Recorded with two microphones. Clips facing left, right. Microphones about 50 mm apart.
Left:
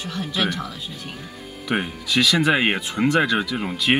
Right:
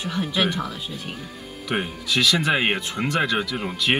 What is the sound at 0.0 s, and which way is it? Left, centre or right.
Speech, centre.